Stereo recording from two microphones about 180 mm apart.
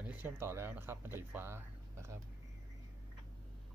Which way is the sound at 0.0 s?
10° right (ahead or behind).